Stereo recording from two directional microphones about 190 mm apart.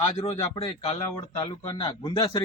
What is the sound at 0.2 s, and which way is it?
A man's voice, 30° left (ahead or behind).